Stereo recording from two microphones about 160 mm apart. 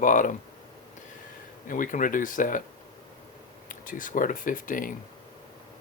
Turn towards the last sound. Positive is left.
turn(degrees=55)  # may be behind; listen again after turning